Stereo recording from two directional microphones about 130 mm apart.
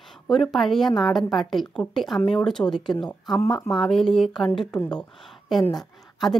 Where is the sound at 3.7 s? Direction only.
5° left (ahead or behind).